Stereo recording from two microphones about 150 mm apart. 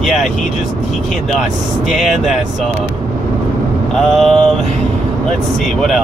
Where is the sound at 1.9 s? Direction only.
Centre (ahead or behind).